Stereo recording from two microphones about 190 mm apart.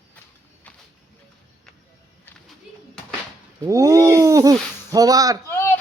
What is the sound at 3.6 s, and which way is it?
Speech, 15° right (ahead or behind).